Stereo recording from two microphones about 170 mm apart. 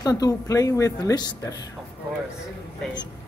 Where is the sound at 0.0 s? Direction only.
20° left (ahead or behind).